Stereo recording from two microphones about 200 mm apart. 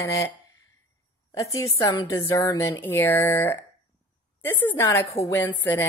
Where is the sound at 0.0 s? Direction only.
15° left (ahead or behind).